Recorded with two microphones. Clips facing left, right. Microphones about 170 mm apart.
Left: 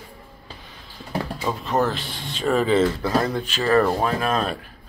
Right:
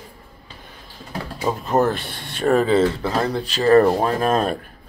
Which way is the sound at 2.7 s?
30° right (ahead or behind).